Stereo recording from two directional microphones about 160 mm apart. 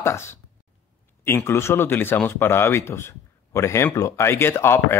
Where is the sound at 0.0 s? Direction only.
15° left (ahead or behind).